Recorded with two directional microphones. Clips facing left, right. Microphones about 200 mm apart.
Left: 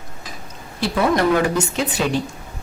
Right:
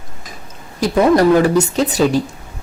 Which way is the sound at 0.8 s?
40° right (ahead or behind).